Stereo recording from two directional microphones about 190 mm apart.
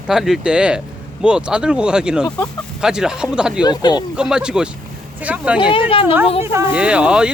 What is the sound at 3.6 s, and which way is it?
Speech, 20° left (ahead or behind).